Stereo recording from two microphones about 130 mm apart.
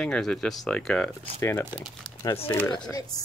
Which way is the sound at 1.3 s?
20° left (ahead or behind).